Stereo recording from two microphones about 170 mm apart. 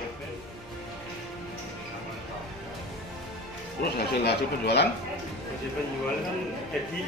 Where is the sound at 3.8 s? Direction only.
70° left (ahead or behind).